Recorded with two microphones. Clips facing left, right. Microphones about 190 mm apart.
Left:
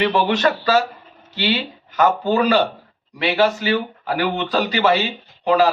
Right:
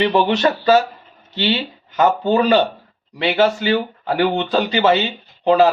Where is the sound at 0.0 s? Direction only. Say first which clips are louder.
Right 2 dB; 20° right (ahead or behind).